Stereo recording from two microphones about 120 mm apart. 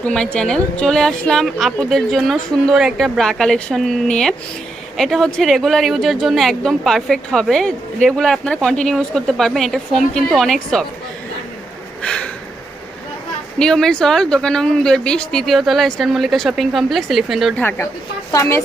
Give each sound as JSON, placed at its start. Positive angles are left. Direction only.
{"t": 0.0, "sound": "speech", "side_deg": 10}
{"t": 12.0, "sound": "a sound", "side_deg": 5}
{"t": 13.6, "sound": "speech", "side_deg": 5}
{"t": 17.6, "sound": "a woman's voice", "side_deg": 15}